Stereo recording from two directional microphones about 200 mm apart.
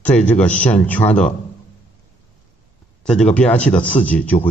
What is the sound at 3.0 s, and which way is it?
Speech, 5° left (ahead or behind).